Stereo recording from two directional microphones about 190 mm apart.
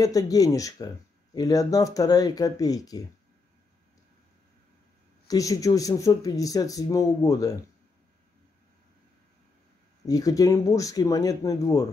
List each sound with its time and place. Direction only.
0.0 s speech: 20° left (ahead or behind)
5.3 s speech: 20° left (ahead or behind)
10.0 s speech: 20° left (ahead or behind)